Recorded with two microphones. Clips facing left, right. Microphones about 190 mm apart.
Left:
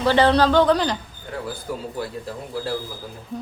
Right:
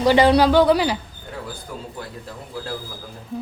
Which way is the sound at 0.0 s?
10° right (ahead or behind).